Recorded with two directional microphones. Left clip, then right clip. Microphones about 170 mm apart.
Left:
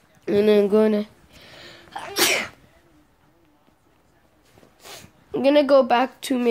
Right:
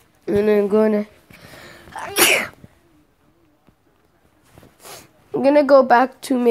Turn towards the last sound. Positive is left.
turn(degrees=-15)  # may be behind; listen again after turning